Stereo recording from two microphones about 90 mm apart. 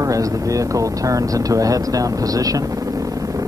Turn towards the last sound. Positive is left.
turn(degrees=-40)  # may be behind; listen again after turning